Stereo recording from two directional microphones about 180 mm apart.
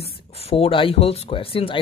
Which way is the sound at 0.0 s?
35° left (ahead or behind).